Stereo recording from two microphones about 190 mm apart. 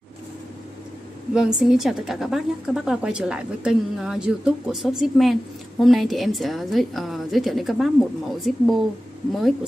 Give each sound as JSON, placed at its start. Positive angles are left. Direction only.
{"t": 1.3, "sound": "a woman's voice", "side_deg": 0}